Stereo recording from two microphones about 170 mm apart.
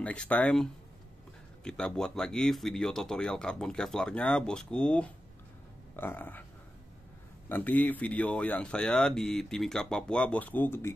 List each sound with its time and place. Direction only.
0.0 s speech: 5° left (ahead or behind)
7.4 s speech: 10° left (ahead or behind)